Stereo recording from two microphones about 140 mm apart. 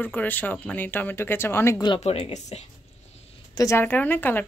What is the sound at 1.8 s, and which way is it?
Speech, 30° left (ahead or behind).